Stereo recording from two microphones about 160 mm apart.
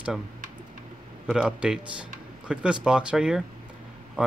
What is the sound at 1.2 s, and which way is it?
Speech, 5° right (ahead or behind).